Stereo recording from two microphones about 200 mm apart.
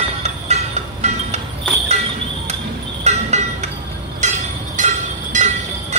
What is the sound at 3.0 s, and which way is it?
Vehicle, 35° right (ahead or behind).